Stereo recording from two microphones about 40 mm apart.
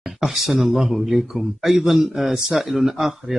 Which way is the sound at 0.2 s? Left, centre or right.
Centre.